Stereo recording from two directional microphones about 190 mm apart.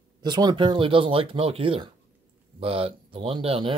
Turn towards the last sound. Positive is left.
turn(degrees=-30)  # may be behind; listen again after turning